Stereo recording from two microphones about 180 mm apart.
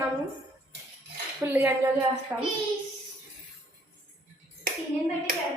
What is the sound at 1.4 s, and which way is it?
Speech, 15° right (ahead or behind).